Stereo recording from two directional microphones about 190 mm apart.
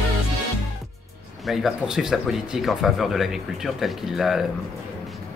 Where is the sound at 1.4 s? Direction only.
Centre (ahead or behind).